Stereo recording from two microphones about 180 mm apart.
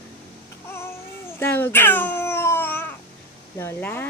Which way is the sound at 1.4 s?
10° left (ahead or behind).